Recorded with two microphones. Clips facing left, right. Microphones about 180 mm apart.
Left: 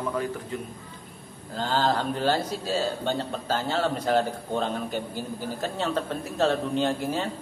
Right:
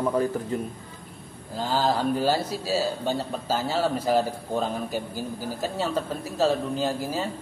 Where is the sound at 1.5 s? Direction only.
5° right (ahead or behind).